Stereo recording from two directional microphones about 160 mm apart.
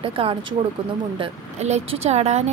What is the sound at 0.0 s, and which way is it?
A woman's voice, 35° right (ahead or behind).